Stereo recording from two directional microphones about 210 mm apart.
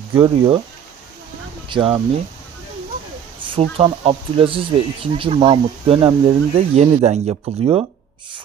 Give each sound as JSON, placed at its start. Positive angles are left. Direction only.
{"t": 0.1, "sound": "speech", "side_deg": -20}
{"t": 1.7, "sound": "speech", "side_deg": -25}
{"t": 3.4, "sound": "speech", "side_deg": -25}